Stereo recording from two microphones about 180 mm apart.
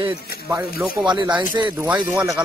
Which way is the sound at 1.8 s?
5° right (ahead or behind).